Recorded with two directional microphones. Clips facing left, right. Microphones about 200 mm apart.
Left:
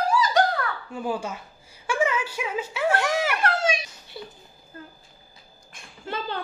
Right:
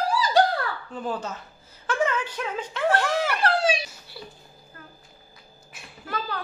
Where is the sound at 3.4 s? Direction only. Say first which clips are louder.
Right 2 dB; 30° right (ahead or behind).